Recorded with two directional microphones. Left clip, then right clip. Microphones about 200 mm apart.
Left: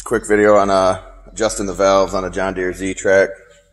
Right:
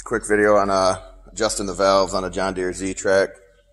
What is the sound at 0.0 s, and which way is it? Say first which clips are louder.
Speech: left 4 dB; centre (ahead or behind).